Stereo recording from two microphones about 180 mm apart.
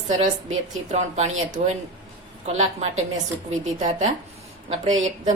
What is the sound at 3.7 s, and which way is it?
Speech, 40° right (ahead or behind).